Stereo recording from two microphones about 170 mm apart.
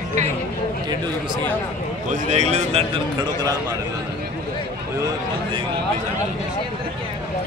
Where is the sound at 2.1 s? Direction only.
40° right (ahead or behind); by 3.8 s 20° right (ahead or behind).